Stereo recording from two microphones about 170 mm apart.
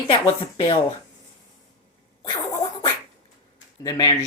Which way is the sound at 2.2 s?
30° left (ahead or behind).